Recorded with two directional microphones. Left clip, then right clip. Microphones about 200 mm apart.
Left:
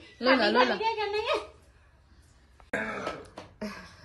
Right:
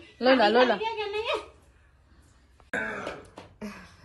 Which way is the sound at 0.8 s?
40° left (ahead or behind).